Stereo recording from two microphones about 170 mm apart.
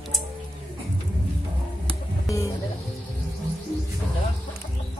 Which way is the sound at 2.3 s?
20° left (ahead or behind).